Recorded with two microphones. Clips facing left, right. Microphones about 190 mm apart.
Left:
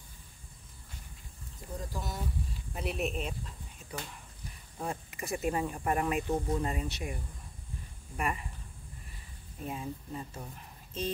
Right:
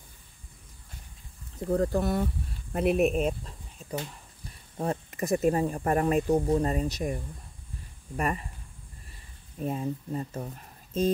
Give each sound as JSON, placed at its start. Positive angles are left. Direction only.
{"t": 1.6, "sound": "speech", "side_deg": -65}
{"t": 4.7, "sound": "speech", "side_deg": -40}
{"t": 8.2, "sound": "speech", "side_deg": -40}
{"t": 9.7, "sound": "speech", "side_deg": -40}